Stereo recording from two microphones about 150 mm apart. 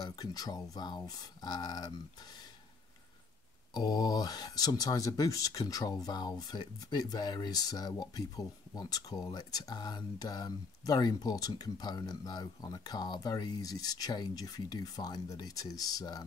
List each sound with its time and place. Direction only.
0.0 s speech: 25° left (ahead or behind)
3.7 s speech: 25° left (ahead or behind)